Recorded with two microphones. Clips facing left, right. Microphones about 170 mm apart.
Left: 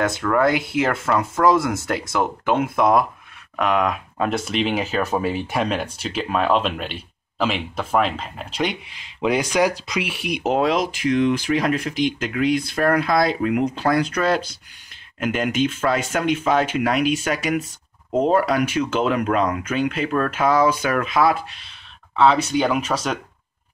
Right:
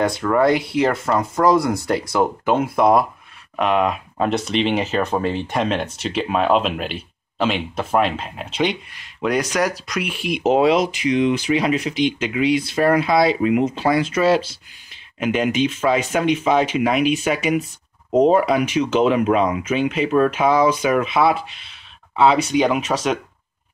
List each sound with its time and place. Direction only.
0.2 s speech: 10° right (ahead or behind)
0.5 s speech: 5° left (ahead or behind)
8.8 s speech: 90° left
9.2 s speech: 10° left (ahead or behind)
10.4 s speech: 5° right (ahead or behind)